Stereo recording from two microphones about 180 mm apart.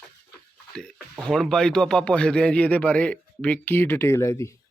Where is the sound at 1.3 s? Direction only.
5° left (ahead or behind).